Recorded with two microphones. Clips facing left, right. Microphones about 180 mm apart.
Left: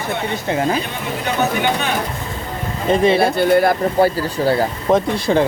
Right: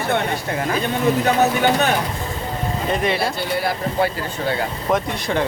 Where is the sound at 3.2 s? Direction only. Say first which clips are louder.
Left 8 dB; 55° left (ahead or behind).